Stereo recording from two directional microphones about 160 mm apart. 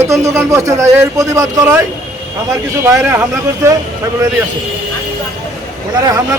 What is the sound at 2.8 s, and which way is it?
Speech, 15° right (ahead or behind).